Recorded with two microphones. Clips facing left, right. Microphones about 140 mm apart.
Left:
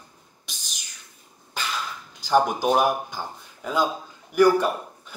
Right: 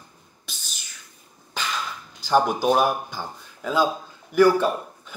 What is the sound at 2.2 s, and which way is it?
Speech, 15° left (ahead or behind).